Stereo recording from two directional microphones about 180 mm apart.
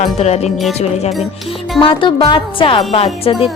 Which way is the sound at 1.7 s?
30° left (ahead or behind).